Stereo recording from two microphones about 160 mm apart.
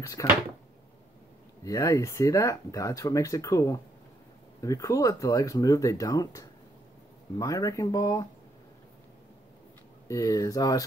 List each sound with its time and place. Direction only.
0.0 s speech: 20° left (ahead or behind)
1.6 s speech: 20° left (ahead or behind)
10.0 s speech: 20° left (ahead or behind)